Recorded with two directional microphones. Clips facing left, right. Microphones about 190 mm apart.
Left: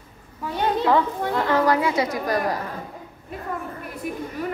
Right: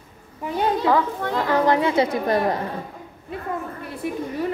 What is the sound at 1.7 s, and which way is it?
Speech, 25° right (ahead or behind).